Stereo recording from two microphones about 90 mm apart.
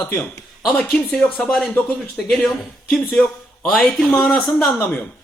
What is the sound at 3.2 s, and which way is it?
A woman's voice, 10° left (ahead or behind).